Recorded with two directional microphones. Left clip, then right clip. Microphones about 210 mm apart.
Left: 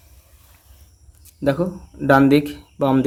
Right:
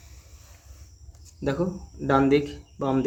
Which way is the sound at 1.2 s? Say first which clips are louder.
Left 7 dB; 25° left (ahead or behind).